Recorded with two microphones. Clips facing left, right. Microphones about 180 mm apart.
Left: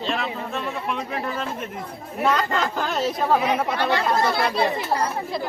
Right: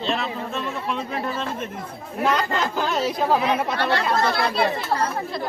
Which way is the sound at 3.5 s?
15° left (ahead or behind).